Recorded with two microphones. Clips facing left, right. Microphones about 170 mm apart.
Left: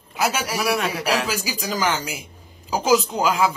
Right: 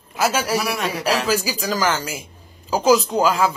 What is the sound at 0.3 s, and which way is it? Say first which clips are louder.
A man's voice: right 1 dB; 10° left (ahead or behind).